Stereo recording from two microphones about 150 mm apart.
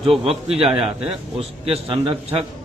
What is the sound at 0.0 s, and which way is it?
Speech, 40° right (ahead or behind).